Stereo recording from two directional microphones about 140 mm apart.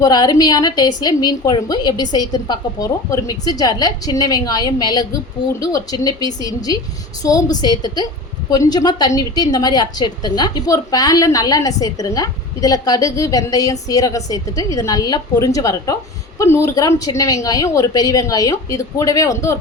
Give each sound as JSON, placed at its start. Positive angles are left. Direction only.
{"t": 0.0, "sound": "a woman's voice", "side_deg": 30}